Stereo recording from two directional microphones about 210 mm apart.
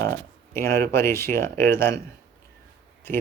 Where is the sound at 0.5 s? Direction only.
15° left (ahead or behind).